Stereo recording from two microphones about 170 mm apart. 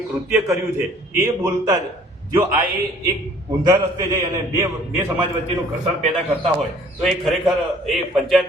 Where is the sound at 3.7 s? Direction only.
20° right (ahead or behind).